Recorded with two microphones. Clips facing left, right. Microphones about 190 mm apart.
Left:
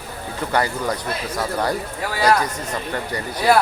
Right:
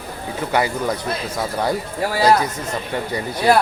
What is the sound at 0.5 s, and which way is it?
Speech, 10° right (ahead or behind).